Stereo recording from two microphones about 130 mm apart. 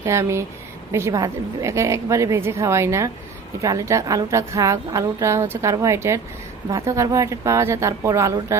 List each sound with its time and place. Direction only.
0.0 s a woman's voice: 20° right (ahead or behind)